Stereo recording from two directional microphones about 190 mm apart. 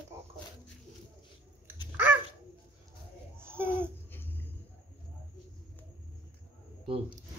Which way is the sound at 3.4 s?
10° right (ahead or behind).